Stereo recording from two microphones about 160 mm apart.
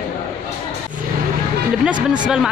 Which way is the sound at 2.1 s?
5° right (ahead or behind).